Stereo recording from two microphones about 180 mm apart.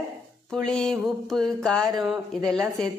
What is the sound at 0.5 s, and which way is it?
A woman's voice, 5° left (ahead or behind).